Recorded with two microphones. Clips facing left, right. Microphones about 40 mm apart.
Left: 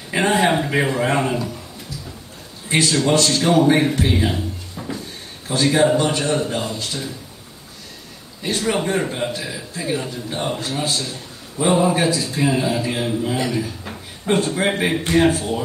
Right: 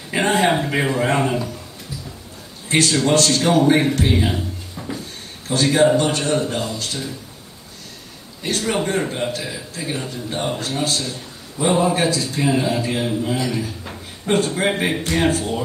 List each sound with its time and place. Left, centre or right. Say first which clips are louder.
0.1 s a man's voice: even; centre
2.7 s a man's voice: even; centre
8.5 s a man's voice: left 1 dB; centre